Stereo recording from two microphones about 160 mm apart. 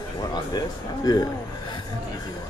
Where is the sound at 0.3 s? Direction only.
25° left (ahead or behind).